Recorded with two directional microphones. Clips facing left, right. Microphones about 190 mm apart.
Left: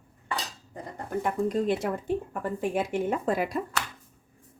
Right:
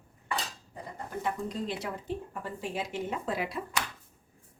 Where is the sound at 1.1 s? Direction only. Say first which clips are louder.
Left 7 dB; 55° left (ahead or behind).